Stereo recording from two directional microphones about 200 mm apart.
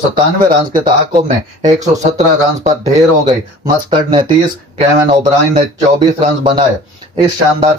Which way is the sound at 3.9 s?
25° right (ahead or behind).